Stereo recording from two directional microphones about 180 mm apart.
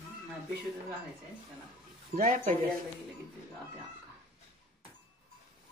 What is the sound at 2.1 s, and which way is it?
Speech, 50° right (ahead or behind).